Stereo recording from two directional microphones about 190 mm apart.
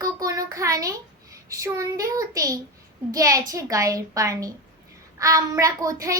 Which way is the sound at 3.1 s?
20° right (ahead or behind).